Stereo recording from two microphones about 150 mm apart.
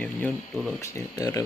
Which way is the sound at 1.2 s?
25° left (ahead or behind).